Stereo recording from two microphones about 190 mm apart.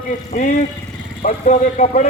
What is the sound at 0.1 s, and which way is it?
A man's voice, 40° left (ahead or behind).